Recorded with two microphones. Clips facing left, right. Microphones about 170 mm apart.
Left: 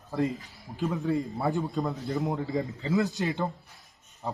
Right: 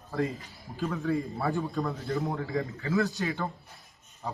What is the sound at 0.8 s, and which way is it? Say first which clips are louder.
A man's voice: left 1 dB; 20° left (ahead or behind).